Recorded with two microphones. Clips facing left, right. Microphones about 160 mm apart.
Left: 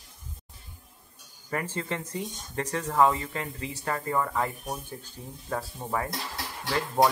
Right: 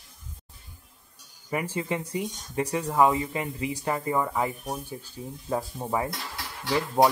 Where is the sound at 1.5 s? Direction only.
10° right (ahead or behind).